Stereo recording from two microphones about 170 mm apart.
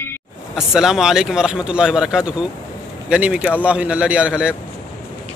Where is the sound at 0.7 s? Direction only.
5° right (ahead or behind).